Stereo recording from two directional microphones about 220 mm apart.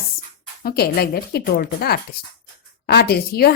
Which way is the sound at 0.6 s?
45° left (ahead or behind).